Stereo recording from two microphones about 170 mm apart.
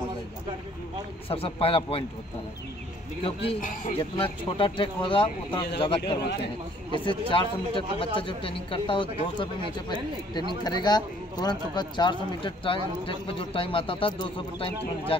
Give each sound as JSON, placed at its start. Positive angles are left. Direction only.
{"t": 1.3, "sound": "speech", "side_deg": 35}
{"t": 4.0, "sound": "speech", "side_deg": 30}